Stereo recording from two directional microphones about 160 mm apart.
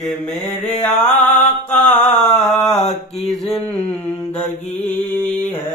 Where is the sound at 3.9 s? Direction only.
10° left (ahead or behind).